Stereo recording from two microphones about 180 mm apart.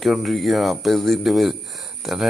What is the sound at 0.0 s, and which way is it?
Speech, centre (ahead or behind).